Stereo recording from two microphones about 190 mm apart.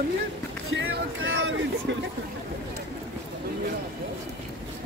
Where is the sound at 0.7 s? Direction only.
80° right.